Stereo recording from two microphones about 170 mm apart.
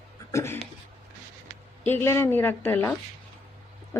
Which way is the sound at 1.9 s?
15° left (ahead or behind).